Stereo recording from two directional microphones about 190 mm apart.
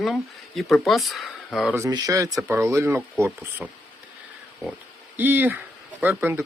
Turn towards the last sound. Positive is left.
turn(degrees=-10)  # may be behind; listen again after turning